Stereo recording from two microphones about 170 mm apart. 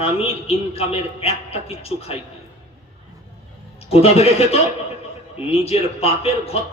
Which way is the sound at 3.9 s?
35° left (ahead or behind).